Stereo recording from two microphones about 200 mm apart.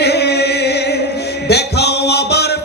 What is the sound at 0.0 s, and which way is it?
Music, 55° left (ahead or behind).